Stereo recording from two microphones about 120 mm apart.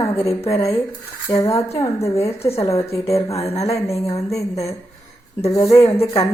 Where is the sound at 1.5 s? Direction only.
55° left (ahead or behind).